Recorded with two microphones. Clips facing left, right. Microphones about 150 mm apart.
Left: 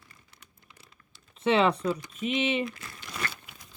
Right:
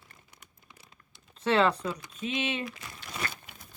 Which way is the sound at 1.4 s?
5° left (ahead or behind).